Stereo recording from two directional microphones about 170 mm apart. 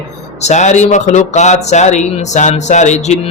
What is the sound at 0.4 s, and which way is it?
Speech, 45° left (ahead or behind).